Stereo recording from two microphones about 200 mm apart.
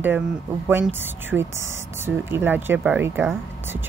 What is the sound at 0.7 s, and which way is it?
Speech, 10° right (ahead or behind).